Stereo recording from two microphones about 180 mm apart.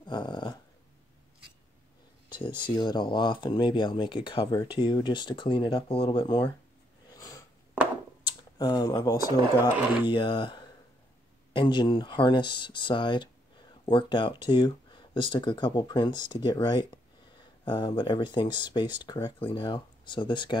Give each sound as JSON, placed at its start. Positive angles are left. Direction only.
{"t": 0.0, "sound": "dog", "side_deg": 25}
{"t": 2.2, "sound": "a sound", "side_deg": 25}
{"t": 2.6, "sound": "speech", "side_deg": 25}
{"t": 7.1, "sound": "snort", "side_deg": 20}
{"t": 8.3, "sound": "speech", "side_deg": 20}